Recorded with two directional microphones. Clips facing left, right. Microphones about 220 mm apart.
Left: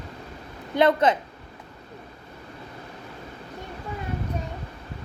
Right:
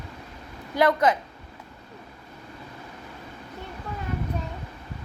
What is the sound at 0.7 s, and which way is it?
Speech, 25° left (ahead or behind).